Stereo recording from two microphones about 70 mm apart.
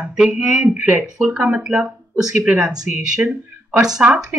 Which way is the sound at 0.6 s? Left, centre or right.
Right.